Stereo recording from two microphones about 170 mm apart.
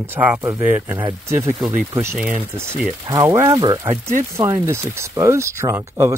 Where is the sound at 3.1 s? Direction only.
20° right (ahead or behind).